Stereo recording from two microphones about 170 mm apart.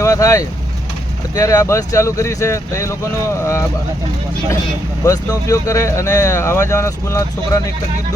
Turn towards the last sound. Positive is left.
turn(degrees=15)  # may be behind; listen again after turning